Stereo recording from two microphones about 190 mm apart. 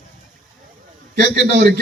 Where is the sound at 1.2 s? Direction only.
50° right (ahead or behind).